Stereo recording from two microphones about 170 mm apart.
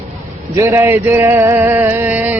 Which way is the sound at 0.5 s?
15° right (ahead or behind).